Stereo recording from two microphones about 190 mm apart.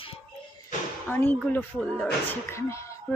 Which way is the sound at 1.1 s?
10° left (ahead or behind).